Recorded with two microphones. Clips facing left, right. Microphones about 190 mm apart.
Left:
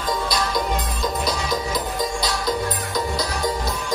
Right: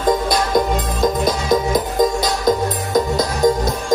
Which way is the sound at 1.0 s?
50° right (ahead or behind).